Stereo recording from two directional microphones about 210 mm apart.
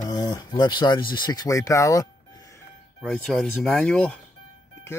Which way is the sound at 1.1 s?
20° left (ahead or behind).